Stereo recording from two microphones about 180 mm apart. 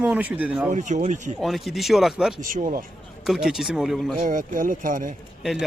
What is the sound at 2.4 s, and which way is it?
Speech, 50° right (ahead or behind).